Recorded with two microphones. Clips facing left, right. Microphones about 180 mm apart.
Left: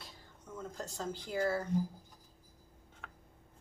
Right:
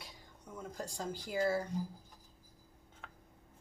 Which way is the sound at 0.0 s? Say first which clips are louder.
Even; 10° right (ahead or behind).